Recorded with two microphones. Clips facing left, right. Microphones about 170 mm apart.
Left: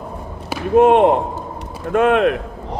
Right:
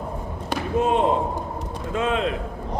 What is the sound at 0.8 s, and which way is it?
Speech, 65° left (ahead or behind).